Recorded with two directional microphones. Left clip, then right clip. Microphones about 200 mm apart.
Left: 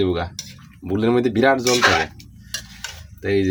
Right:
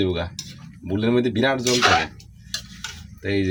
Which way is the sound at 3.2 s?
40° left (ahead or behind).